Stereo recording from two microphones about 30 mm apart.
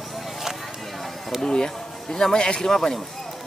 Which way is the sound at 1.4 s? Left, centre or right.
Left.